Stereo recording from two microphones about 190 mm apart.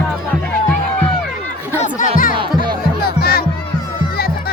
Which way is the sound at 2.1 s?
45° left (ahead or behind).